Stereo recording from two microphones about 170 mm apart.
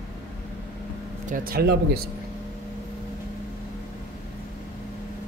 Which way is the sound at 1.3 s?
60° right (ahead or behind).